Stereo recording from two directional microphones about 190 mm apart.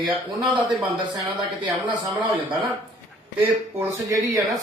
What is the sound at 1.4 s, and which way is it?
Speech, 25° right (ahead or behind).